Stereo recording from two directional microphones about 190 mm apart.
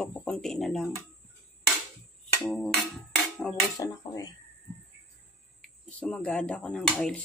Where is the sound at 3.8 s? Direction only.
20° left (ahead or behind).